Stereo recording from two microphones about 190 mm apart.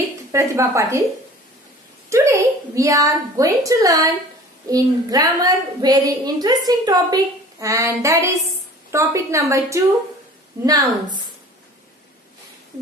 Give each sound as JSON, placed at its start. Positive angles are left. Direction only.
{"t": 0.3, "sound": "a woman's voice", "side_deg": -15}
{"t": 2.0, "sound": "a woman's voice", "side_deg": -15}